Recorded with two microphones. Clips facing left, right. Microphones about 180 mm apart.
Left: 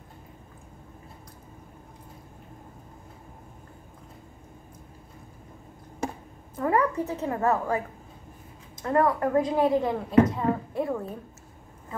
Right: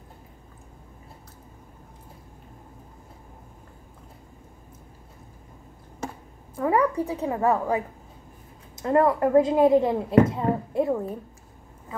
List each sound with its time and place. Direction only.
6.5 s a woman's voice: 10° right (ahead or behind)
8.8 s speech: 25° right (ahead or behind)